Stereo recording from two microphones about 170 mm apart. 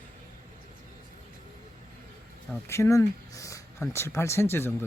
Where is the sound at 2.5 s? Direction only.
15° left (ahead or behind).